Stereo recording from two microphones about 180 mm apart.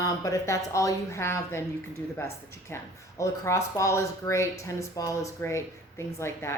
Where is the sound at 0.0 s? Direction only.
20° left (ahead or behind).